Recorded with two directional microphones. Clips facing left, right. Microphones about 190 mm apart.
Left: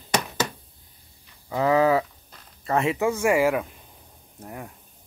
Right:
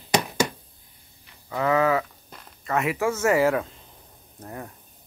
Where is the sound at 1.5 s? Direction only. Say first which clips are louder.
Left 2 dB; 25° left (ahead or behind).